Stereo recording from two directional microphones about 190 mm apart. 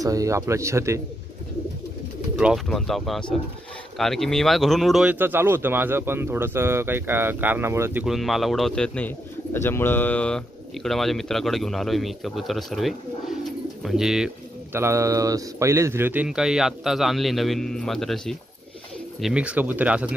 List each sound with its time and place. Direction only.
0.0 s speech: 15° right (ahead or behind)
2.3 s speech: centre (ahead or behind)